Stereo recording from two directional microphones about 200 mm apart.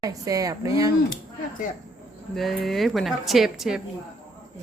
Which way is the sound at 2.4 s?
Centre (ahead or behind).